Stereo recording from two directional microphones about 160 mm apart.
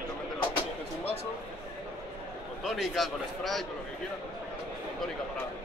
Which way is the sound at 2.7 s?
Centre (ahead or behind).